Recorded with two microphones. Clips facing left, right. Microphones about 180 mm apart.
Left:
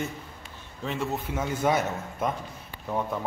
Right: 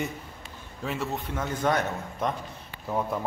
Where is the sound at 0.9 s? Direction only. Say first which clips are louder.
Left 1 dB; centre (ahead or behind).